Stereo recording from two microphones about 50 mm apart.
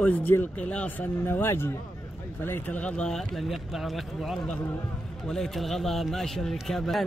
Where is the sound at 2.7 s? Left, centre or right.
Left.